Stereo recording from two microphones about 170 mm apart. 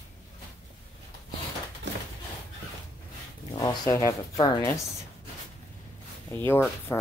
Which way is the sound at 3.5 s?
20° left (ahead or behind).